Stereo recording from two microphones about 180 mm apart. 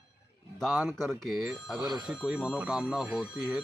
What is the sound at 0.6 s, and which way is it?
Speech, centre (ahead or behind).